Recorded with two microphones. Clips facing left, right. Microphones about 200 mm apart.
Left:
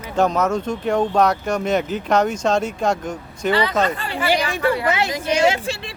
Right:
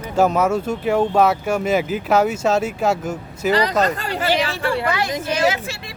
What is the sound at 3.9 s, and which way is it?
Speech, 40° right (ahead or behind).